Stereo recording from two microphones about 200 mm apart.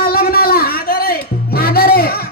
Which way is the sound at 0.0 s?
50° left (ahead or behind).